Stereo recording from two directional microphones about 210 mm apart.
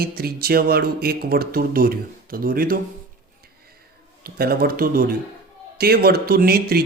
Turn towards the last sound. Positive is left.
turn(degrees=-45)  # may be behind; listen again after turning